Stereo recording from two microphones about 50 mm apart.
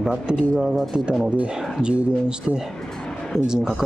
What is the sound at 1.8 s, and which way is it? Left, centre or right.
Speech, centre.